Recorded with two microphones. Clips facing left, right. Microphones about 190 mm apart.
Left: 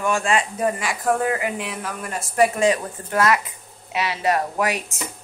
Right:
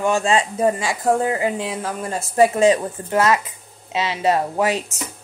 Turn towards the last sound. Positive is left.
turn(degrees=-25)  # may be behind; listen again after turning